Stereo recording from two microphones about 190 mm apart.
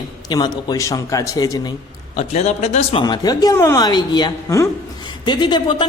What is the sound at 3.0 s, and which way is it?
Speech, 20° left (ahead or behind).